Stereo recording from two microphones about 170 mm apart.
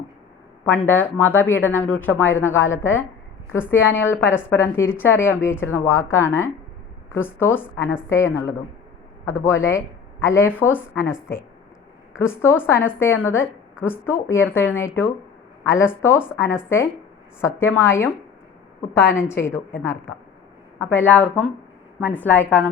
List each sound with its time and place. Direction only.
0.6 s speech: 10° left (ahead or behind)
12.2 s speech: 15° left (ahead or behind)
19.3 s speech: 15° left (ahead or behind)
20.7 s speech: 10° left (ahead or behind)